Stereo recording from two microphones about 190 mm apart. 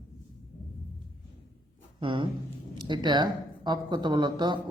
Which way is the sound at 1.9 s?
25° right (ahead or behind).